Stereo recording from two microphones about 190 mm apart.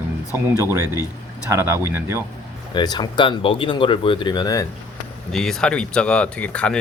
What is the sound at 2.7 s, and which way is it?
Speech, 25° left (ahead or behind).